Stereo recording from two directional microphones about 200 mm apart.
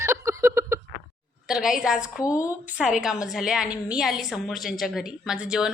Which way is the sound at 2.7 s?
5° right (ahead or behind).